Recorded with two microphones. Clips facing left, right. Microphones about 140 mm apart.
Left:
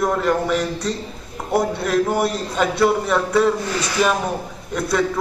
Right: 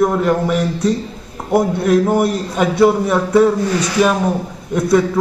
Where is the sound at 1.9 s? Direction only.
5° right (ahead or behind).